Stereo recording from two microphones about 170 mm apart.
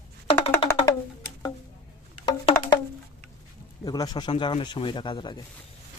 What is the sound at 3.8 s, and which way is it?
Speech, 20° left (ahead or behind).